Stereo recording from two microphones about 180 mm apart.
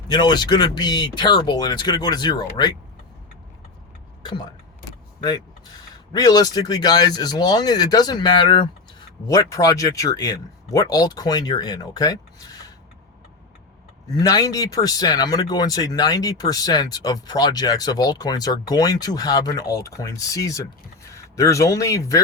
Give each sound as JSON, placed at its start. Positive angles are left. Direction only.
{"t": 0.1, "sound": "speech", "side_deg": 25}
{"t": 4.2, "sound": "speech", "side_deg": 25}
{"t": 6.1, "sound": "speech", "side_deg": 20}
{"t": 14.2, "sound": "speech", "side_deg": 20}